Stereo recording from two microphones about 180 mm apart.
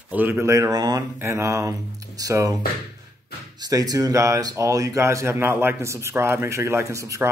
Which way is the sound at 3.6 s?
20° right (ahead or behind).